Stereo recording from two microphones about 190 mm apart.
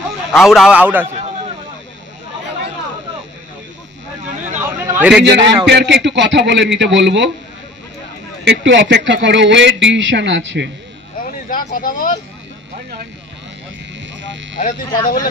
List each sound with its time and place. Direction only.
0.3 s a man's voice: centre (ahead or behind)
4.6 s a sound: 15° right (ahead or behind)
5.2 s a man's voice: 65° right (ahead or behind)
8.5 s a man's voice: 75° right (ahead or behind)
11.4 s speech: 45° left (ahead or behind)
14.2 s a sound: 75° right (ahead or behind)